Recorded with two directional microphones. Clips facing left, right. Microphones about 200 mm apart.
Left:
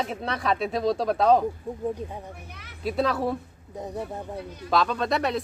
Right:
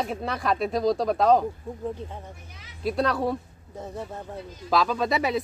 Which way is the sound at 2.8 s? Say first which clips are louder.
Even; centre (ahead or behind).